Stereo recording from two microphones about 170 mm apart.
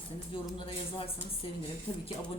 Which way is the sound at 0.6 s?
35° left (ahead or behind).